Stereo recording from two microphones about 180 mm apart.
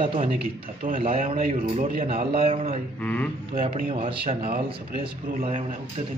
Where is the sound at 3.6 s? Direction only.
30° right (ahead or behind).